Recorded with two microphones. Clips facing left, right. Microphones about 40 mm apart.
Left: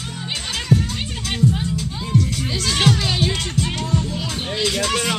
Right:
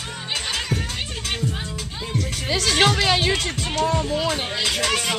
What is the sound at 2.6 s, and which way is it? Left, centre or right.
Speech, right.